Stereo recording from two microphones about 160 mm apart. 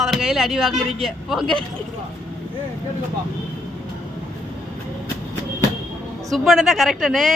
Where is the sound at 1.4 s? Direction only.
30° right (ahead or behind).